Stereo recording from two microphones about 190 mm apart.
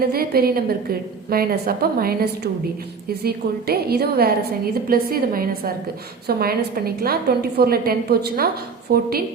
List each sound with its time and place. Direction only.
0.0 s a woman's voice: 55° right (ahead or behind)